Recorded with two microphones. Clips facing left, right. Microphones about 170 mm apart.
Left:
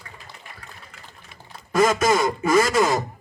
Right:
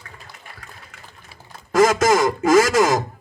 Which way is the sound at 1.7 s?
90° right.